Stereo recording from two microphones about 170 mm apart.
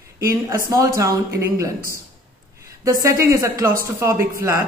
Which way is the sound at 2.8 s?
15° right (ahead or behind).